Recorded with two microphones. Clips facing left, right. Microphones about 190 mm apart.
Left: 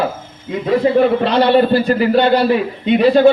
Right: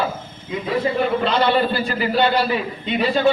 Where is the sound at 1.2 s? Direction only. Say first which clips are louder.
Left 6 dB; 60° left (ahead or behind).